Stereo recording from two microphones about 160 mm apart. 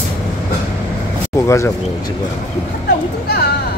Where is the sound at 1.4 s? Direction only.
20° left (ahead or behind).